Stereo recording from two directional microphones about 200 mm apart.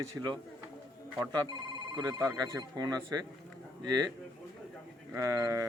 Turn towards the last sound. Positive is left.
turn(degrees=-15)  # may be behind; listen again after turning